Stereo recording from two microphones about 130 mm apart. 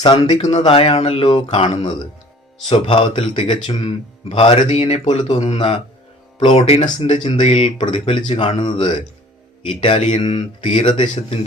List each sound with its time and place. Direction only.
0.0 s speech: 35° left (ahead or behind)
5.4 s speech: 50° left (ahead or behind)